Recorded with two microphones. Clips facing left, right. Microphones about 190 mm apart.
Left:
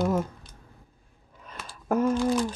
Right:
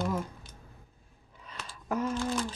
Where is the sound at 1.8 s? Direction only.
50° left (ahead or behind).